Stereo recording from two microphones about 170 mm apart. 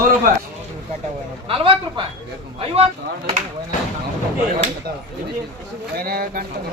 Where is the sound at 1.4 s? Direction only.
30° right (ahead or behind).